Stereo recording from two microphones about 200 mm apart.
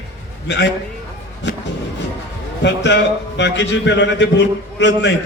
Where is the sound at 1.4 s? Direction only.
65° left (ahead or behind).